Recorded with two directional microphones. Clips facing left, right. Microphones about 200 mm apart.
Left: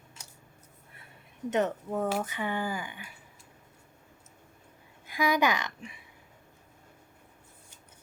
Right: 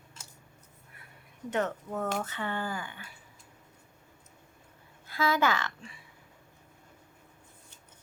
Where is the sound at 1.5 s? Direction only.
15° left (ahead or behind).